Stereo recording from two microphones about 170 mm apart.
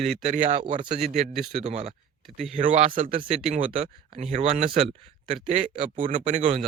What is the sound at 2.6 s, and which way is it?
Speech, 45° right (ahead or behind).